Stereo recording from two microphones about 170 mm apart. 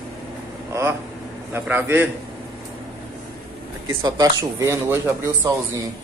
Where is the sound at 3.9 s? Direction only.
20° right (ahead or behind).